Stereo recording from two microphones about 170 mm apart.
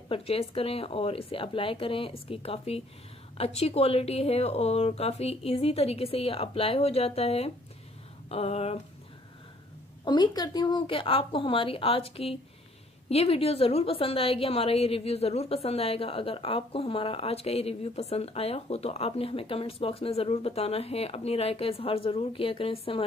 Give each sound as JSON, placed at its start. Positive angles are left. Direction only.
{"t": 0.1, "sound": "a woman's voice", "side_deg": 35}
{"t": 10.0, "sound": "a woman's voice", "side_deg": 25}